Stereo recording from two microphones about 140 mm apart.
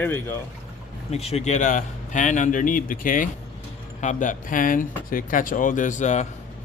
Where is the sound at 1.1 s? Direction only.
50° left (ahead or behind).